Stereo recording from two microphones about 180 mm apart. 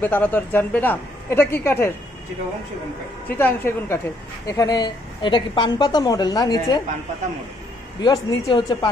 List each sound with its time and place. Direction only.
0.0 s speech: 10° left (ahead or behind)
3.3 s a woman's voice: 10° left (ahead or behind)
8.0 s a woman's voice: 25° left (ahead or behind)